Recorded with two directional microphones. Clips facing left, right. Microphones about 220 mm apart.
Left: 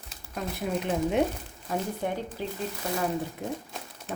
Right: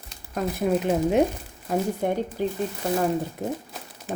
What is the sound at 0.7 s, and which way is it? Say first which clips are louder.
Speech: right 5 dB; 40° right (ahead or behind).